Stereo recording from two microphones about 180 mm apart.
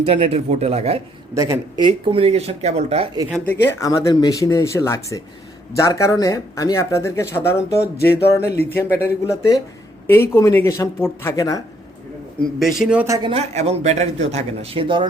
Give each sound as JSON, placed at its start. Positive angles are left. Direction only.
{"t": 0.0, "sound": "speech", "side_deg": -35}
{"t": 1.4, "sound": "speech", "side_deg": -20}
{"t": 3.7, "sound": "speech", "side_deg": 20}
{"t": 12.4, "sound": "a man's voice", "side_deg": 0}
{"t": 13.1, "sound": "speech", "side_deg": -30}